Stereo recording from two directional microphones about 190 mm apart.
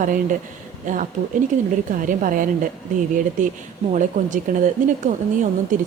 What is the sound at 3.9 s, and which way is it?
Speech, 40° right (ahead or behind).